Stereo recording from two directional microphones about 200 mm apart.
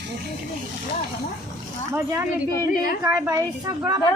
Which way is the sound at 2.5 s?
45° left (ahead or behind).